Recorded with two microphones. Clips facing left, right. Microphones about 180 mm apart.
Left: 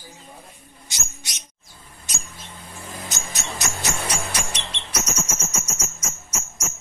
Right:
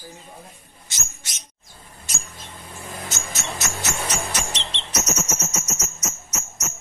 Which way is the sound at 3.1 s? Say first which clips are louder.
Right 1 dB; 15° left (ahead or behind).